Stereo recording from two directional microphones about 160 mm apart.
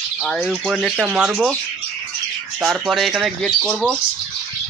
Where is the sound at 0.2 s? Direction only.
5° left (ahead or behind).